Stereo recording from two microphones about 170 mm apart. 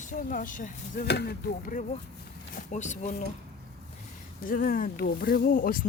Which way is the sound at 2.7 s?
45° left (ahead or behind).